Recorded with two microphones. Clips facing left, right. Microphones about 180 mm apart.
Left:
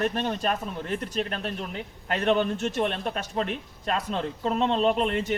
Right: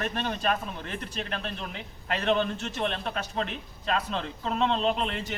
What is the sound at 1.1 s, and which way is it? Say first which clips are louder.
A man's voice: left 4 dB; 45° left (ahead or behind).